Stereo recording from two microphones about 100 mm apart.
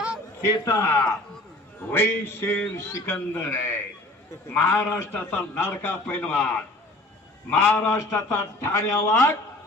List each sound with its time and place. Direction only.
0.4 s a man's voice: 30° left (ahead or behind)
5.1 s a man's voice: 15° left (ahead or behind)
7.6 s a man's voice: 15° left (ahead or behind)
7.9 s a man's voice: 25° left (ahead or behind)